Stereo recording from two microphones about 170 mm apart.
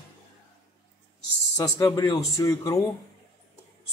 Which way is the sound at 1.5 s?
20° left (ahead or behind).